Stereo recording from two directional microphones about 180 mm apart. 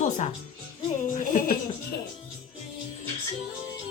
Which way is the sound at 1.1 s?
45° left (ahead or behind).